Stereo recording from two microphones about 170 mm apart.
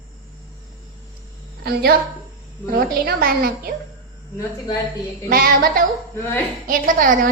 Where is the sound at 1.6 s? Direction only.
65° right (ahead or behind).